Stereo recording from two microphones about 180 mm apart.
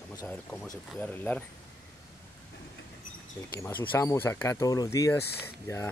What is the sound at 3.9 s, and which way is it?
Speech, 15° left (ahead or behind).